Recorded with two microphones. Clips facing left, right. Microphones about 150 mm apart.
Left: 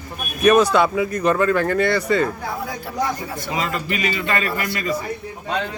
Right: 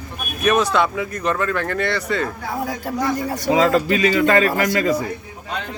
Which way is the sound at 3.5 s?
90° right.